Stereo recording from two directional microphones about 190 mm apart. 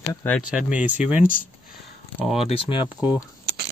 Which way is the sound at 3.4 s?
60° right (ahead or behind).